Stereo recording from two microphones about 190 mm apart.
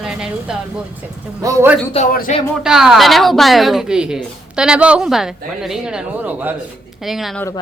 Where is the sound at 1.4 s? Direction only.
15° right (ahead or behind).